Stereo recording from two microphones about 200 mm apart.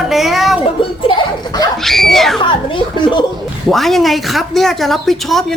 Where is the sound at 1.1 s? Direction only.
20° left (ahead or behind).